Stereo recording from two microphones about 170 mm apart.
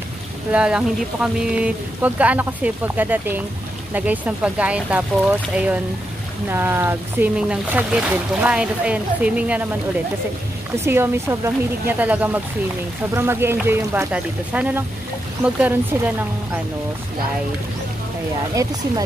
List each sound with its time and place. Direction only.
0.5 s speech: 5° right (ahead or behind)
10.8 s speech: 15° right (ahead or behind)
18.5 s speech: 20° right (ahead or behind)